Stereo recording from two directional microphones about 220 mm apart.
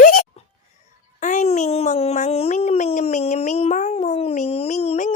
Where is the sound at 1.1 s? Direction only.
35° left (ahead or behind).